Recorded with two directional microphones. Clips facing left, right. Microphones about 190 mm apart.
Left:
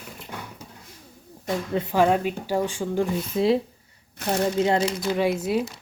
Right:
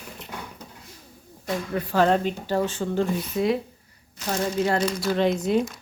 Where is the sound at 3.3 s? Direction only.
30° left (ahead or behind); by 5.7 s 5° left (ahead or behind).